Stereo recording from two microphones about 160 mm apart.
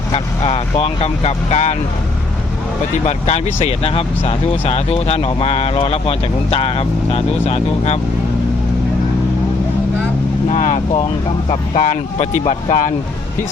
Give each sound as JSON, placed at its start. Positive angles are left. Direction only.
{"t": 0.1, "sound": "speech", "side_deg": 40}
{"t": 3.1, "sound": "speech", "side_deg": 45}
{"t": 10.5, "sound": "speech", "side_deg": 50}